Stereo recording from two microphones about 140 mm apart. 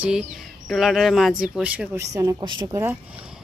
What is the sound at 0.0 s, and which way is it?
A woman's voice, 5° right (ahead or behind).